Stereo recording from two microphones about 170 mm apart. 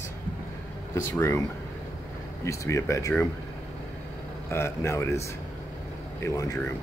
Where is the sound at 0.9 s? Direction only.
15° left (ahead or behind).